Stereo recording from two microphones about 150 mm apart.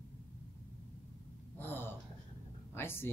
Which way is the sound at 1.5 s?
15° left (ahead or behind).